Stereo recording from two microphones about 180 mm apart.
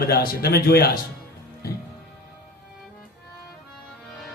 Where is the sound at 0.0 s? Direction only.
60° left (ahead or behind).